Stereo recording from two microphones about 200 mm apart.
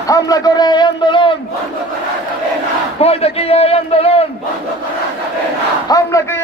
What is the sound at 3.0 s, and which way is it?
A man's voice, 30° left (ahead or behind).